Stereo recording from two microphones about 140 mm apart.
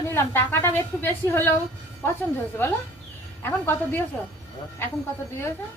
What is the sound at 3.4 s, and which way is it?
Speech, 15° left (ahead or behind).